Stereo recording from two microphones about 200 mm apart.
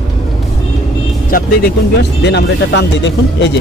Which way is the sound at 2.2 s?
60° left (ahead or behind).